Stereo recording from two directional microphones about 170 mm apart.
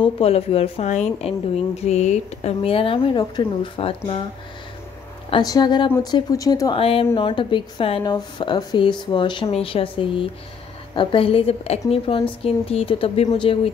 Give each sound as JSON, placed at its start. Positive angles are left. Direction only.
{"t": 0.0, "sound": "a woman's voice", "side_deg": 35}
{"t": 5.3, "sound": "speech", "side_deg": 25}
{"t": 6.8, "sound": "a woman's voice", "side_deg": 35}